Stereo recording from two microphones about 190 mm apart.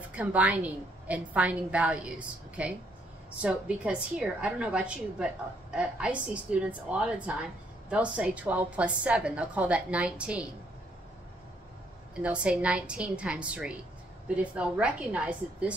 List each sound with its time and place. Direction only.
0.1 s a woman's voice: 5° right (ahead or behind)
12.2 s a woman's voice: 5° right (ahead or behind)